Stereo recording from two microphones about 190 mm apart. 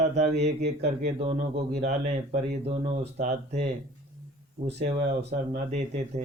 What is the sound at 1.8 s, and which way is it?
Speech, 35° right (ahead or behind).